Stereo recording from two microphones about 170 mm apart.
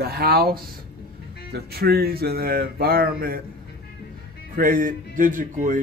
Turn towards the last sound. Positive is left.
turn(degrees=-50)  # may be behind; listen again after turning